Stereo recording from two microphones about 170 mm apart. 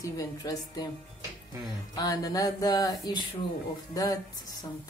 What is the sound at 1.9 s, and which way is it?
A woman's voice, 20° left (ahead or behind).